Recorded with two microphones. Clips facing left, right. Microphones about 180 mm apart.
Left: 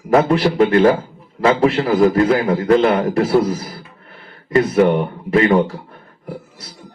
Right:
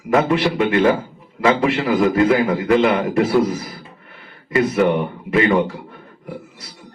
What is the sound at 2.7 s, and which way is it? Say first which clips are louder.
Speech: left 2 dB; 5° right (ahead or behind).